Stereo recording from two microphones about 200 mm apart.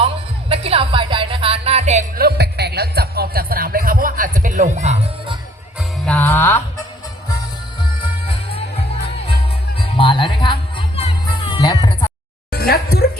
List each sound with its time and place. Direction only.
0.0 s speech: 30° right (ahead or behind)
2.1 s speech: 50° right (ahead or behind); by 5.4 s 30° right (ahead or behind)
6.1 s music: 10° left (ahead or behind)
8.3 s music: 30° left (ahead or behind)
9.7 s music: 25° left (ahead or behind)
12.5 s speech: 55° left (ahead or behind)